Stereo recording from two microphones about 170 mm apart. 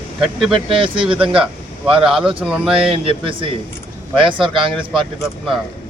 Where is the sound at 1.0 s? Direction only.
5° right (ahead or behind).